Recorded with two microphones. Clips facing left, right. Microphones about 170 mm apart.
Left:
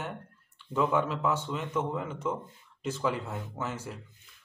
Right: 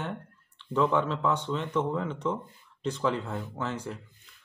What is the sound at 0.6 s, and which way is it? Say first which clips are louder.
A man's voice: right 2 dB; 5° left (ahead or behind).